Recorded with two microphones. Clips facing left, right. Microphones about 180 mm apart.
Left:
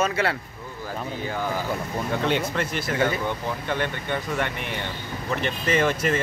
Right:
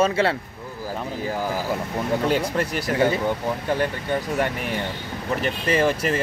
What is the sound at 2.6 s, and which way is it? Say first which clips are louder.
Speech: right 3 dB; 35° right (ahead or behind).